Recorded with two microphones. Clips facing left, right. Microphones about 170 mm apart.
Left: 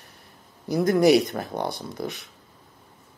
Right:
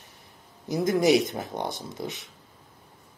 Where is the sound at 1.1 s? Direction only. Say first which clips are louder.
Left 2 dB; 15° right (ahead or behind).